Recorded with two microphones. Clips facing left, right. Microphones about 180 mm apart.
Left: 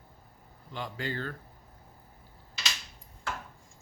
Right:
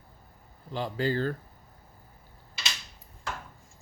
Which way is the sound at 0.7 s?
35° right (ahead or behind).